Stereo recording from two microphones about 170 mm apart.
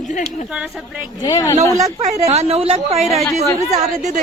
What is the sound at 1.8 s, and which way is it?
A woman's voice, 40° right (ahead or behind).